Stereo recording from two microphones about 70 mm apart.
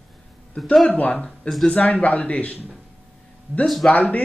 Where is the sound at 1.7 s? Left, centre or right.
Centre.